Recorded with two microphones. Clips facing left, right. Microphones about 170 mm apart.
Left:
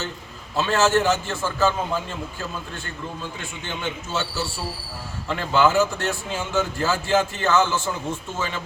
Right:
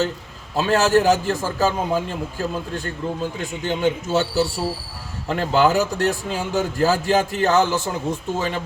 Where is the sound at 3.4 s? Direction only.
40° right (ahead or behind).